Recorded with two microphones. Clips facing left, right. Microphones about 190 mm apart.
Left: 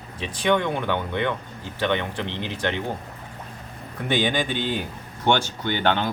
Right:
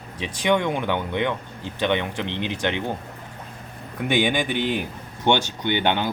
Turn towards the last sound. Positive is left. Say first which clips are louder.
# right 1 dB
turn(degrees=-15)  # may be behind; listen again after turning